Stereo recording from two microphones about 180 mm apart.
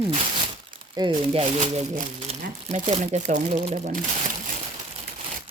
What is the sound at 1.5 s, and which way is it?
Speech, 40° right (ahead or behind).